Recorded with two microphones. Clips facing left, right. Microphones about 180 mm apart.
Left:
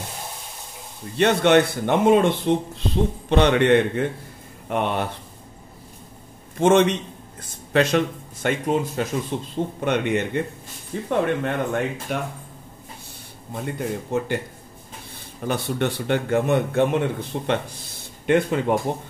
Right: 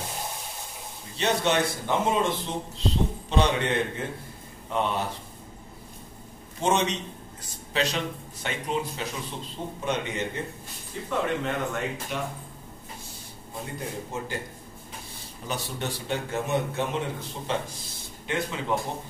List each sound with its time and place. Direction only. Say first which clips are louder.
1.1 s speech: left 8 dB; 60° left (ahead or behind)
6.6 s speech: left 8 dB; 60° left (ahead or behind)
14.1 s speech: left 11 dB; 65° left (ahead or behind)
15.4 s speech: left 9 dB; 60° left (ahead or behind)